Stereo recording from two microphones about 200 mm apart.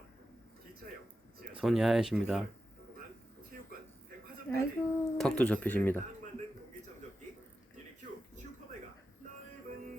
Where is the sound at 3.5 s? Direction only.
50° right (ahead or behind).